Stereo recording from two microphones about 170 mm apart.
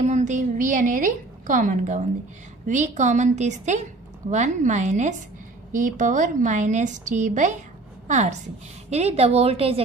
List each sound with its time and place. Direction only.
0.0 s a woman's voice: 45° right (ahead or behind)